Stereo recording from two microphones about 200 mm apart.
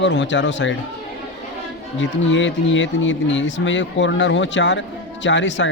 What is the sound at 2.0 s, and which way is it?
Speech, 70° left (ahead or behind).